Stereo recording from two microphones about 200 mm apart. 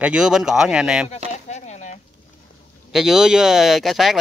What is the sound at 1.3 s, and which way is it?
Chopping, 35° left (ahead or behind).